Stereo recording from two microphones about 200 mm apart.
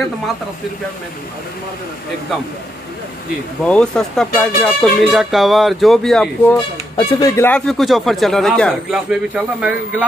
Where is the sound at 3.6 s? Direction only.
5° left (ahead or behind).